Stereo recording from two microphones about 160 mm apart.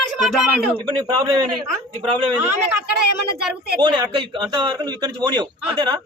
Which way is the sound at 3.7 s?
25° right (ahead or behind).